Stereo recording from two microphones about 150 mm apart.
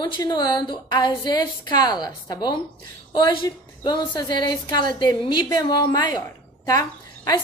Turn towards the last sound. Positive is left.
turn(degrees=25)  # may be behind; listen again after turning